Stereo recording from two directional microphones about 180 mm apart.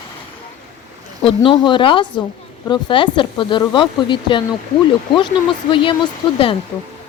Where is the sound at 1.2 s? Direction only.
25° left (ahead or behind).